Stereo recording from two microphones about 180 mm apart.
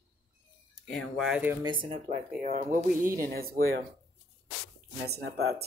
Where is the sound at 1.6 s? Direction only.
25° right (ahead or behind).